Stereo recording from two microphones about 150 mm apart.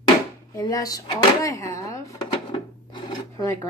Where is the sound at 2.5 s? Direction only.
30° left (ahead or behind).